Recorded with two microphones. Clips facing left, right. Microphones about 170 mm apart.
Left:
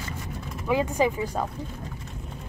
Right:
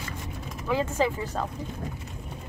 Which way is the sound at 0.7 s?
15° left (ahead or behind).